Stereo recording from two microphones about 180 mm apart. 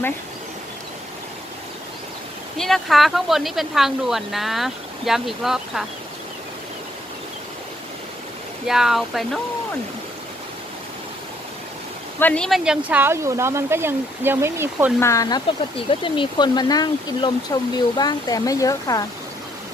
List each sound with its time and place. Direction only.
2.6 s speech: centre (ahead or behind)
8.6 s speech: centre (ahead or behind)
12.2 s speech: 5° left (ahead or behind); by 14.9 s 10° right (ahead or behind)
15.0 s speech: 20° left (ahead or behind)